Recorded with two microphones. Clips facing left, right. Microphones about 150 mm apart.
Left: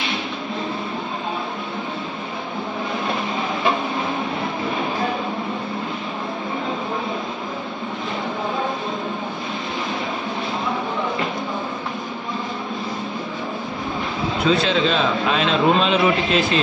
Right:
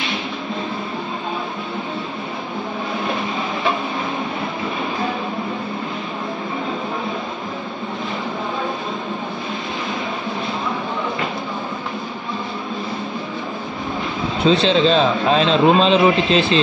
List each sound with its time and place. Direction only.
14.4 s a man's voice: 25° right (ahead or behind)